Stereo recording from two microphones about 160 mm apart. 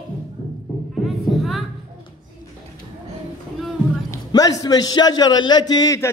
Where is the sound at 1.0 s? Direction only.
Centre (ahead or behind).